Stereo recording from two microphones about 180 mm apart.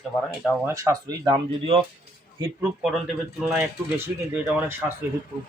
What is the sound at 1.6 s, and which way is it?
Speech, 30° right (ahead or behind).